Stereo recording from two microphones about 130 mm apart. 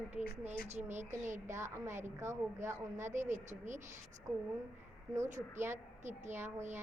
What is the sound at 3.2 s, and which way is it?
Speech, 70° right (ahead or behind).